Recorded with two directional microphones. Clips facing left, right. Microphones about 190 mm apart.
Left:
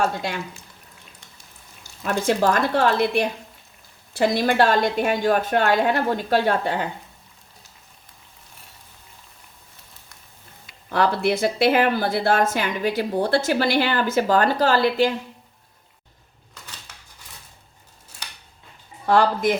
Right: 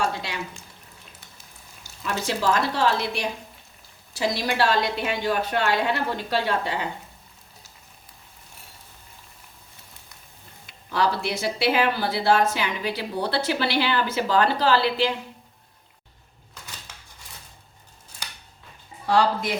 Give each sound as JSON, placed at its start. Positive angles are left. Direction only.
{"t": 2.1, "sound": "a woman's voice", "side_deg": 50}
{"t": 10.9, "sound": "a woman's voice", "side_deg": 55}
{"t": 19.0, "sound": "a woman's voice", "side_deg": 50}